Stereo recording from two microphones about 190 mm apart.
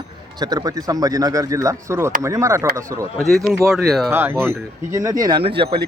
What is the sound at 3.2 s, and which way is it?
Speech, centre (ahead or behind).